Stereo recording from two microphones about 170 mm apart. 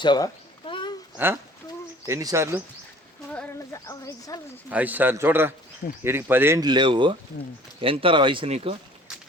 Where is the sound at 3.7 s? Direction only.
20° left (ahead or behind).